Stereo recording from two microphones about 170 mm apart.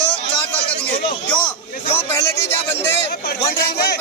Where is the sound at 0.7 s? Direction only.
5° left (ahead or behind).